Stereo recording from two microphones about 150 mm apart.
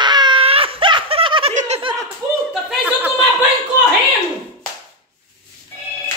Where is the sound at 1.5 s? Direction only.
55° right (ahead or behind).